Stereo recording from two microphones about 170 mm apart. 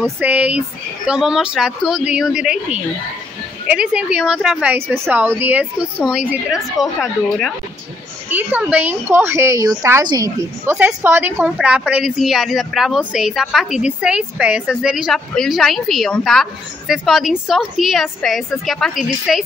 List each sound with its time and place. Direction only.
0.2 s a woman's voice: 10° right (ahead or behind)
8.3 s a woman's voice: 10° right (ahead or behind)